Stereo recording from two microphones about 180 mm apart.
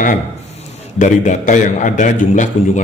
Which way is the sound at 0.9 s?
45° left (ahead or behind).